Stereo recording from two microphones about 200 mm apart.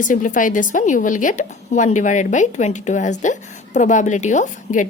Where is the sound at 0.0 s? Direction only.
40° left (ahead or behind).